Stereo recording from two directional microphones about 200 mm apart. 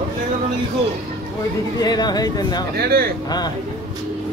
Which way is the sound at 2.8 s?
50° right (ahead or behind).